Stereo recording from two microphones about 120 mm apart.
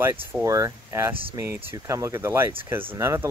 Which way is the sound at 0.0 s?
20° right (ahead or behind).